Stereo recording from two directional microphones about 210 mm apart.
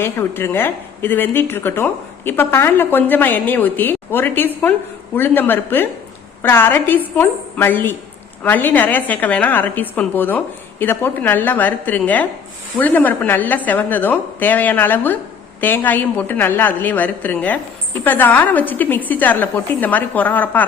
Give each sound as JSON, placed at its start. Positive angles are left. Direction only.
{"t": 0.0, "sound": "a woman's voice", "side_deg": 10}